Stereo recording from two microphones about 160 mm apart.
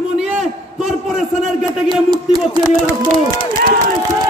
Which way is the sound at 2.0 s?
25° right (ahead or behind).